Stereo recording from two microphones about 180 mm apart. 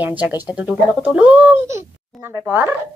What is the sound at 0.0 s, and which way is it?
Speech, 10° right (ahead or behind).